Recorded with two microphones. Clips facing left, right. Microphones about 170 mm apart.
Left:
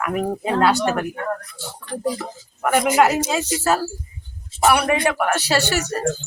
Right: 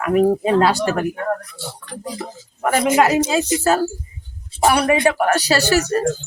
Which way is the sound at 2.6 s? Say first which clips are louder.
Right 2 dB; 30° right (ahead or behind).